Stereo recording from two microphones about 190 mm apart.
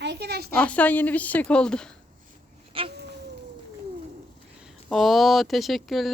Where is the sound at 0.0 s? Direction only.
60° right (ahead or behind).